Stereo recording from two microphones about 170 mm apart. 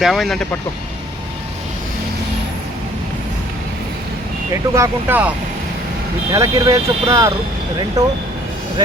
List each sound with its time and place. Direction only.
0.0 s speech: centre (ahead or behind)
4.7 s speech: 15° right (ahead or behind)
6.3 s speech: 20° right (ahead or behind)